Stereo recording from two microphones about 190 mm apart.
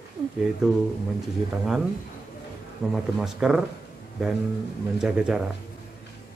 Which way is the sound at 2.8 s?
5° right (ahead or behind).